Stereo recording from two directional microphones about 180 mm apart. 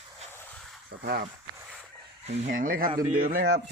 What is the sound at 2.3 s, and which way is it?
A man's voice, 40° right (ahead or behind).